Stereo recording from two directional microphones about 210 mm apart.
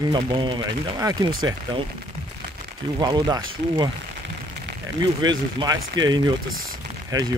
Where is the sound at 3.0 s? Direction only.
20° right (ahead or behind).